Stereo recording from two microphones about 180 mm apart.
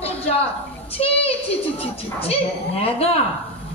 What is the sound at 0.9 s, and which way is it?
A woman's voice, 35° left (ahead or behind).